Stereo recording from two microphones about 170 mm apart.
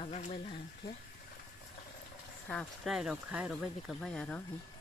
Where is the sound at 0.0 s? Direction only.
40° left (ahead or behind).